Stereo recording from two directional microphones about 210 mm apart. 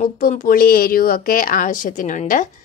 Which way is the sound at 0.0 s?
40° left (ahead or behind).